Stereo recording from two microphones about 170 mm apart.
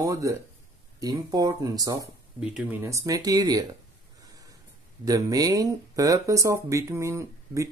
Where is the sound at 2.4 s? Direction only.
10° right (ahead or behind).